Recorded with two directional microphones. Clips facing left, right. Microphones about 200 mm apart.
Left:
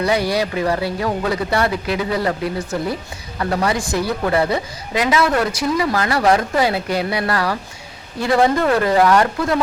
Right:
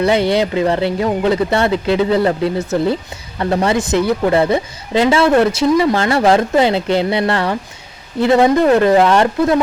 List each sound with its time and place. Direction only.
0.0 s speech: 25° right (ahead or behind)